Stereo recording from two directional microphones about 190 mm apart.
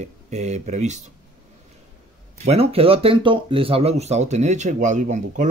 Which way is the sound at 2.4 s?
35° right (ahead or behind).